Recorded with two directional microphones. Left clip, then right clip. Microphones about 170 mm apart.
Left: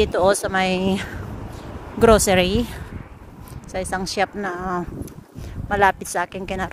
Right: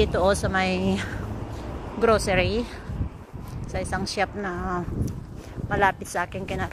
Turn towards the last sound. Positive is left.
turn(degrees=70)  # may be behind; listen again after turning